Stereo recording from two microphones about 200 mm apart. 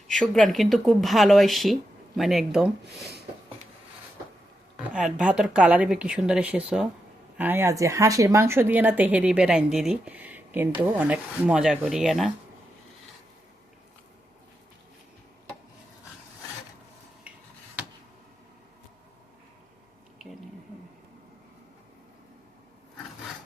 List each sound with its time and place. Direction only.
0.1 s speech: centre (ahead or behind)
4.8 s speech: 5° right (ahead or behind)